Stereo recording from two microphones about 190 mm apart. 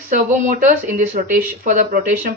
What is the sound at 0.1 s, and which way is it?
Speech, 40° right (ahead or behind).